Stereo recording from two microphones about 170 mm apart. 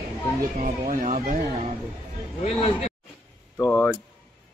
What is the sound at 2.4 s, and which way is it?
Speech, 35° left (ahead or behind).